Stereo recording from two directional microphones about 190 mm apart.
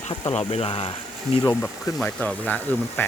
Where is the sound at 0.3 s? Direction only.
30° left (ahead or behind).